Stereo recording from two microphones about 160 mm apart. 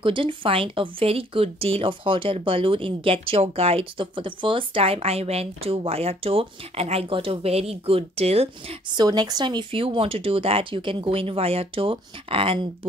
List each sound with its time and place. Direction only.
0.0 s speech: 35° right (ahead or behind)